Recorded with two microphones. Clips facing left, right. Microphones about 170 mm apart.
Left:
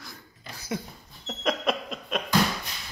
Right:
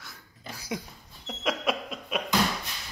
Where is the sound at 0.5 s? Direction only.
10° right (ahead or behind).